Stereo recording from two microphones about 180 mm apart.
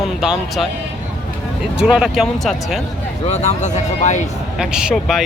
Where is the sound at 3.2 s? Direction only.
40° left (ahead or behind).